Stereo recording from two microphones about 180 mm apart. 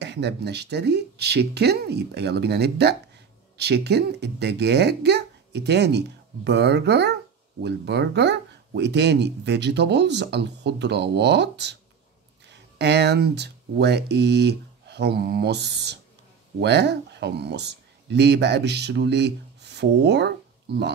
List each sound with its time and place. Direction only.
0.0 s speech: 75° right (ahead or behind)